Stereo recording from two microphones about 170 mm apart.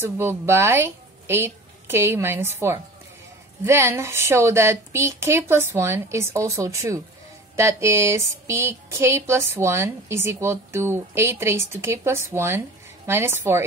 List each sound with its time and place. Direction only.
0.0 s speech: 15° right (ahead or behind)